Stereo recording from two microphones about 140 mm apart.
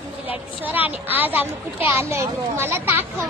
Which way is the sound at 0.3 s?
10° right (ahead or behind).